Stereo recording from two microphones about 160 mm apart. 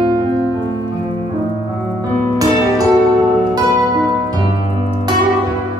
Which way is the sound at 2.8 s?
25° right (ahead or behind).